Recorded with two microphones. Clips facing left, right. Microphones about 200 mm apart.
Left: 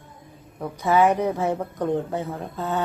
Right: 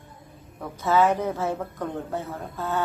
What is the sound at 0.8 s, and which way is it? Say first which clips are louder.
Speech: left 2 dB; 15° left (ahead or behind).